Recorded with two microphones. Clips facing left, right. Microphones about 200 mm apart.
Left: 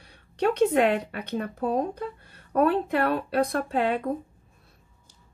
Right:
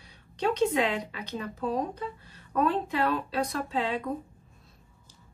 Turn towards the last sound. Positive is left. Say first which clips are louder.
# left 5 dB
turn(degrees=55)  # may be behind; listen again after turning